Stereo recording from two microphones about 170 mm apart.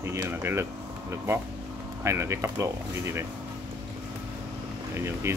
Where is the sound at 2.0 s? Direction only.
15° right (ahead or behind).